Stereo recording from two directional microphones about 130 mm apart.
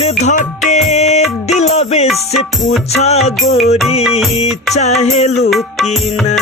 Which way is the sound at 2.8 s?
55° left (ahead or behind).